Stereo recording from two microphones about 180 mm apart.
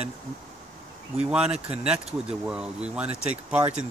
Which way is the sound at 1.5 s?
35° right (ahead or behind).